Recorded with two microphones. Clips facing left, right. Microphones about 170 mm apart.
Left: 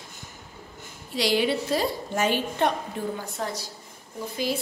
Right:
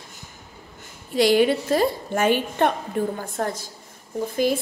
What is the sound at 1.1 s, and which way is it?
A woman's voice, 50° right (ahead or behind).